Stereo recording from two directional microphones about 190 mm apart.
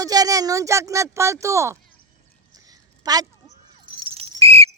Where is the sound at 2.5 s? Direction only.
20° right (ahead or behind).